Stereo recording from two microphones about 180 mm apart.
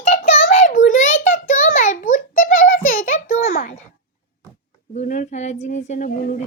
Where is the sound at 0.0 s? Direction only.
35° left (ahead or behind).